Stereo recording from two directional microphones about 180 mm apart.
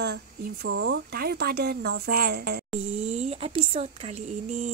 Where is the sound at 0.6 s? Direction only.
90° right; by 2.6 s 60° right (ahead or behind).